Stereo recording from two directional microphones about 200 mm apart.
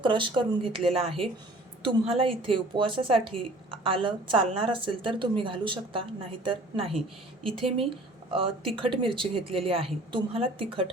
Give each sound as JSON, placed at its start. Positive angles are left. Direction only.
{"t": 0.0, "sound": "a woman's voice", "side_deg": -25}